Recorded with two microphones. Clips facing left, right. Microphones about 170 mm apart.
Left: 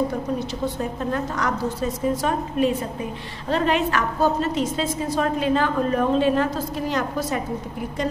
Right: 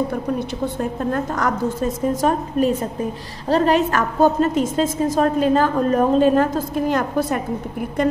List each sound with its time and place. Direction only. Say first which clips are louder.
1.1 s a woman's voice: right 3 dB; 45° right (ahead or behind)